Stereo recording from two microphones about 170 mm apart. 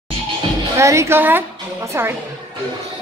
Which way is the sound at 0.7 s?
15° right (ahead or behind).